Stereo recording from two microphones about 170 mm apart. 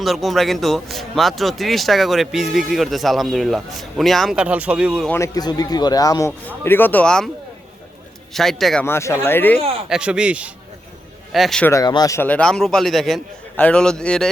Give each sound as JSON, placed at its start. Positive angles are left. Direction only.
{"t": 0.0, "sound": "speech", "side_deg": 0}
{"t": 5.0, "sound": "a man's voice", "side_deg": 15}
{"t": 8.3, "sound": "speech", "side_deg": 0}
{"t": 8.8, "sound": "speech", "side_deg": 15}
{"t": 9.9, "sound": "speech", "side_deg": -5}
{"t": 11.7, "sound": "speech", "side_deg": 20}